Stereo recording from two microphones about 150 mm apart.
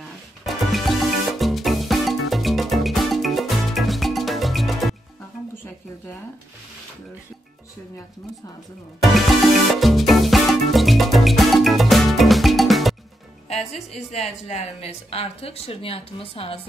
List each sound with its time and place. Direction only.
0.5 s music: centre (ahead or behind)
9.0 s music: centre (ahead or behind)
13.5 s a woman's voice: 45° left (ahead or behind)